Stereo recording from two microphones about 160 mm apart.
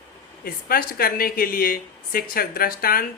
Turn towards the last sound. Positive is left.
turn(degrees=65)  # may be behind; listen again after turning